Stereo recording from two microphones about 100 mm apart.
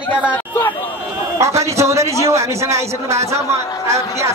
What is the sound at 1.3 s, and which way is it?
A man's voice, 30° right (ahead or behind).